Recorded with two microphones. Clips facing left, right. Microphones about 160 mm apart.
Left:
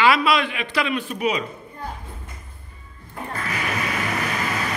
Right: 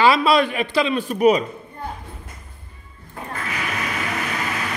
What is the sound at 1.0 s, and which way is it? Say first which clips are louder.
Speech: right 8 dB; 45° right (ahead or behind).